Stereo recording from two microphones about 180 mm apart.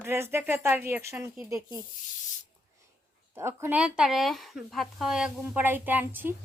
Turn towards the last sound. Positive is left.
turn(degrees=-10)  # may be behind; listen again after turning